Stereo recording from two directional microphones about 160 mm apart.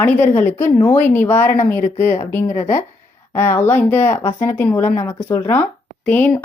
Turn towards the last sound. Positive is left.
turn(degrees=10)  # may be behind; listen again after turning